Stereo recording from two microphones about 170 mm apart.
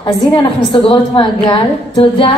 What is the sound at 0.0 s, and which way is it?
A woman's voice, 30° left (ahead or behind).